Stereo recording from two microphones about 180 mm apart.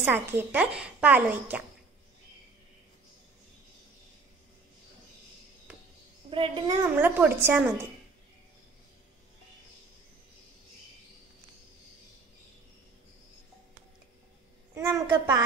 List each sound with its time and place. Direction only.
0.0 s a woman's voice: 10° right (ahead or behind)
6.3 s a child's voice: 30° right (ahead or behind)
6.8 s a woman's voice: 10° right (ahead or behind)
14.7 s a child's voice: 15° right (ahead or behind)